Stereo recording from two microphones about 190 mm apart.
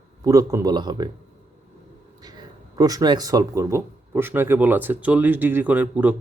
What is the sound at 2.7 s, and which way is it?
Speech, 20° right (ahead or behind).